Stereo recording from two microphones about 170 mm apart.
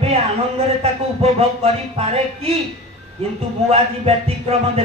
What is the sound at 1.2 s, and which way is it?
Music, 35° right (ahead or behind).